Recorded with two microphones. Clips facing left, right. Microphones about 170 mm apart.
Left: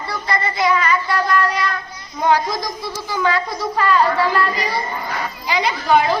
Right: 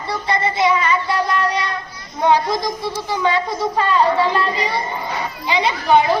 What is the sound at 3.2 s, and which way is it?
A woman's voice, 25° right (ahead or behind).